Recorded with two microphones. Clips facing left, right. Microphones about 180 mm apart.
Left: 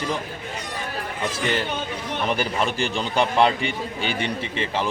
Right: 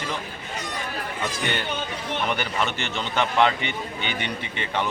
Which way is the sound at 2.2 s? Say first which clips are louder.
Left 4 dB; 35° left (ahead or behind).